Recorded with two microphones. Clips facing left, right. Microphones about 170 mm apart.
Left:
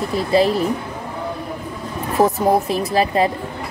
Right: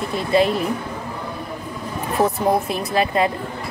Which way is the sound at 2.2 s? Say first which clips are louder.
Left 3 dB; 35° left (ahead or behind).